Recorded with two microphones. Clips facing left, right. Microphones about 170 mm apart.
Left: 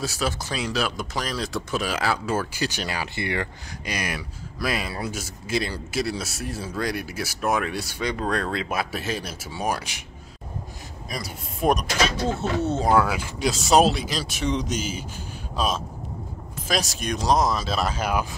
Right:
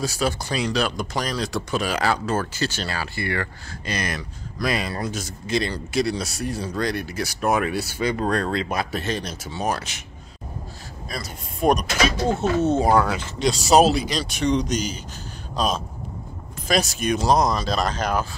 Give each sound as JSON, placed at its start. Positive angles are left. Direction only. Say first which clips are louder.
{"t": 0.0, "sound": "speech", "louder": "right 3 dB", "side_deg": 0}
{"t": 11.1, "sound": "a man's voice", "louder": "even", "side_deg": 15}
{"t": 11.6, "sound": "speech", "louder": "right 2 dB", "side_deg": 0}
{"t": 12.3, "sound": "speech", "louder": "right 4 dB", "side_deg": -20}
{"t": 12.9, "sound": "speech", "louder": "right 1 dB", "side_deg": 5}